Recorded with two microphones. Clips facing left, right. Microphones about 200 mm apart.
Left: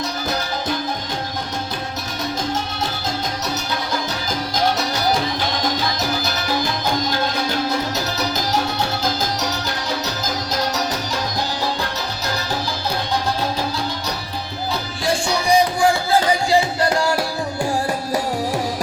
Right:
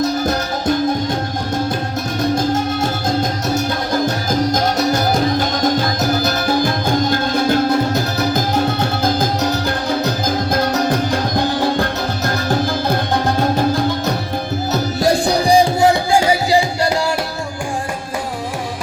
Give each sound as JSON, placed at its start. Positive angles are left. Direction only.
{"t": 4.5, "sound": "music", "side_deg": -50}
{"t": 10.5, "sound": "music", "side_deg": -55}
{"t": 14.7, "sound": "music", "side_deg": -40}